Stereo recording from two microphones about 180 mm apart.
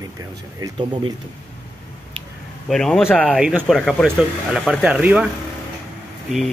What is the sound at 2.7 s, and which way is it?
Speech, 5° left (ahead or behind).